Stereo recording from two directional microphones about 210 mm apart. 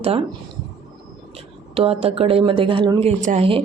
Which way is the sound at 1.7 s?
25° right (ahead or behind).